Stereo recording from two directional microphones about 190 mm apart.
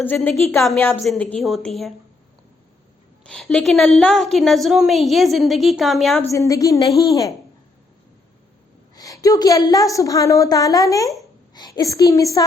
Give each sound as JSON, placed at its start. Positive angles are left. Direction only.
{"t": 0.0, "sound": "a woman's voice", "side_deg": 10}
{"t": 3.2, "sound": "a woman's voice", "side_deg": 5}
{"t": 6.3, "sound": "a woman's voice", "side_deg": 15}
{"t": 9.0, "sound": "a woman's voice", "side_deg": 15}